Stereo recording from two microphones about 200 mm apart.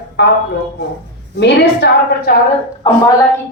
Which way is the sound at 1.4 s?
55° left (ahead or behind).